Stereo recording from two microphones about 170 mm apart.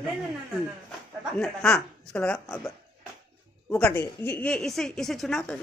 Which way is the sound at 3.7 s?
10° left (ahead or behind).